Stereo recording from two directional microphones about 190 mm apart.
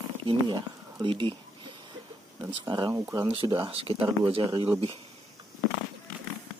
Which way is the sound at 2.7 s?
20° right (ahead or behind).